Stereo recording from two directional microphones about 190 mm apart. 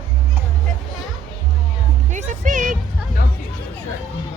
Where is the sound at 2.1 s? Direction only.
40° right (ahead or behind).